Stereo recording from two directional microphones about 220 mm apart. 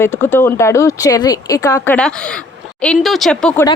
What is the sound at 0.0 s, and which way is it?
Speech, 10° left (ahead or behind).